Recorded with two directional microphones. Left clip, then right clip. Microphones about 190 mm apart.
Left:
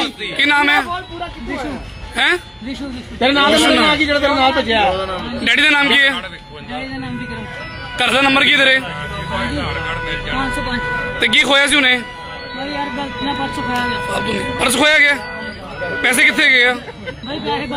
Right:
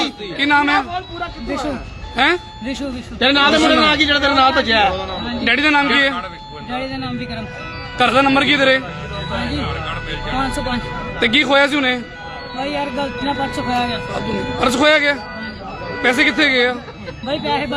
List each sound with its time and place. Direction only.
0.3 s speech: 5° right (ahead or behind)
2.1 s a man's voice: centre (ahead or behind)
3.2 s a man's voice: 15° left (ahead or behind)
3.6 s a man's voice: centre (ahead or behind)
3.8 s a man's voice: 10° left (ahead or behind)
6.7 s speech: 20° right (ahead or behind)
7.9 s a man's voice: centre (ahead or behind)
10.3 s speech: 25° right (ahead or behind)
11.2 s a man's voice: 5° right (ahead or behind)
12.7 s speech: 20° right (ahead or behind)
14.1 s a man's voice: 10° right (ahead or behind)
17.2 s speech: 20° right (ahead or behind)